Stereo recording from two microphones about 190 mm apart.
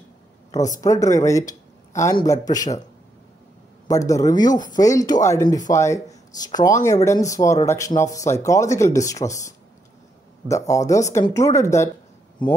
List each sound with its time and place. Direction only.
0.5 s a man's voice: 20° left (ahead or behind)
3.8 s a man's voice: 15° left (ahead or behind)
10.5 s speech: 15° left (ahead or behind)